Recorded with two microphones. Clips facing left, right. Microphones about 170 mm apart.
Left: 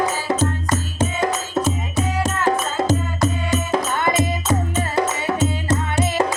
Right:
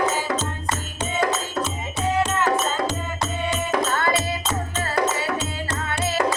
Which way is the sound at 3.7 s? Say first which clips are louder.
Left 1 dB; 20° left (ahead or behind).